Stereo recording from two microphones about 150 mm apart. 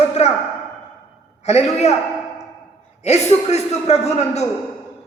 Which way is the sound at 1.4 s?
45° left (ahead or behind).